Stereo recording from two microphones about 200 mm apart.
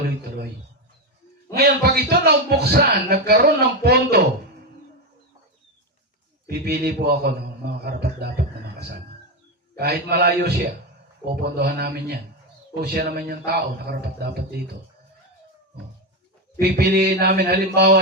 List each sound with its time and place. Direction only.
1.5 s a man's voice: 50° right (ahead or behind)
6.5 s a man's voice: 50° right (ahead or behind)
9.7 s a man's voice: 50° right (ahead or behind)
16.6 s a man's voice: 50° right (ahead or behind)